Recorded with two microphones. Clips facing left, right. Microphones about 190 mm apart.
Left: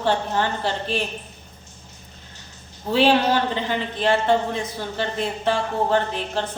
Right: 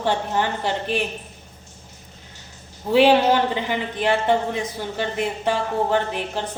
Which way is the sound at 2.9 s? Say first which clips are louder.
Right 3 dB; 15° right (ahead or behind).